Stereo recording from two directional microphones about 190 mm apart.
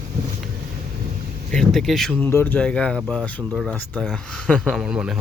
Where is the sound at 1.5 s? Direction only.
Centre (ahead or behind).